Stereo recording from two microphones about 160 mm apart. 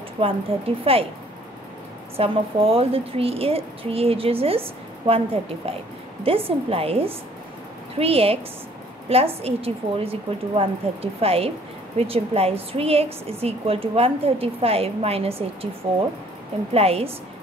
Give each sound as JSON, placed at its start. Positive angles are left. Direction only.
{"t": 0.2, "sound": "a woman's voice", "side_deg": -35}
{"t": 2.1, "sound": "a woman's voice", "side_deg": -35}
{"t": 16.7, "sound": "a woman's voice", "side_deg": -40}